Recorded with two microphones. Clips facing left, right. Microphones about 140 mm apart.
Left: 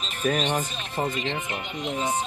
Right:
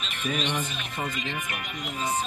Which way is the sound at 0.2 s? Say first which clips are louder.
Left 5 dB; 40° left (ahead or behind).